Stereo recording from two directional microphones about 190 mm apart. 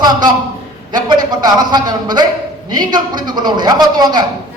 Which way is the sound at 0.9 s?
20° right (ahead or behind).